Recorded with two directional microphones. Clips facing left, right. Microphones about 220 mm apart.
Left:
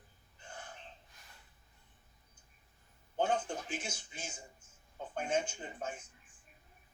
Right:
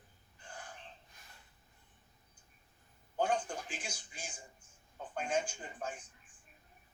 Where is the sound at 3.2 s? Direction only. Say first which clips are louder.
Left 1 dB; 25° left (ahead or behind).